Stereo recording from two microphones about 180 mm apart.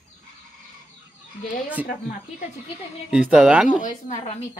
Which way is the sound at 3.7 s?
45° left (ahead or behind).